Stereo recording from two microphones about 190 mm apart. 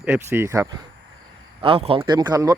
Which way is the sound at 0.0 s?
10° right (ahead or behind).